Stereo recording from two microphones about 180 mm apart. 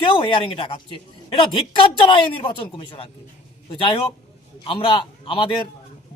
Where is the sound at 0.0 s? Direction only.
30° left (ahead or behind).